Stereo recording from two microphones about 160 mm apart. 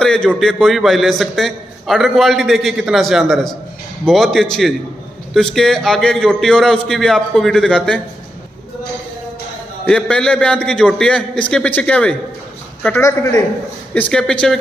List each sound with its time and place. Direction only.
0.0 s a sound: 5° left (ahead or behind)
0.3 s a man's voice: centre (ahead or behind)
9.8 s a man's voice: 5° left (ahead or behind)
13.9 s a man's voice: 10° left (ahead or behind)